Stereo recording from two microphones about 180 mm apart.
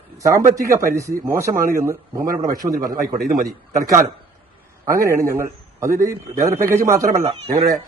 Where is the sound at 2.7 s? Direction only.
50° right (ahead or behind).